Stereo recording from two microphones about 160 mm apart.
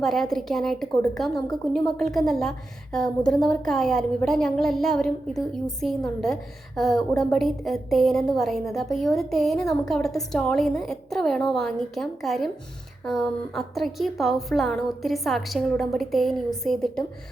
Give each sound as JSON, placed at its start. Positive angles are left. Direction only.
{"t": 0.0, "sound": "a woman's voice", "side_deg": 0}